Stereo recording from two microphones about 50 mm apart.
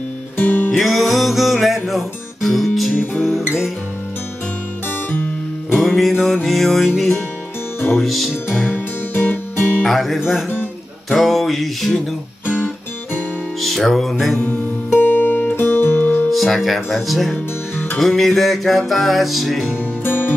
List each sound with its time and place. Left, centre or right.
0.4 s music: left
0.7 s music: centre
2.9 s music: left
5.8 s music: centre
8.6 s music: left
9.8 s music: centre
13.6 s music: centre
14.4 s music: left
15.5 s music: left
16.3 s music: centre
20.0 s music: left